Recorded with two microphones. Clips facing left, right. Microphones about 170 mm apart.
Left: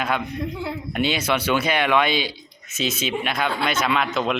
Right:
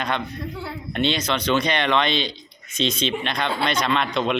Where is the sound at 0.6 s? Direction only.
10° left (ahead or behind).